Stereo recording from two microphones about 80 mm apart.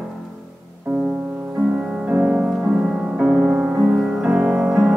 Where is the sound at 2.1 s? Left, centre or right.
Right.